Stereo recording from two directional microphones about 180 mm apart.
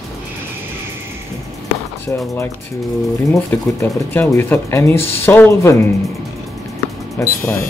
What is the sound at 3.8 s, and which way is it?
Speech, 10° left (ahead or behind).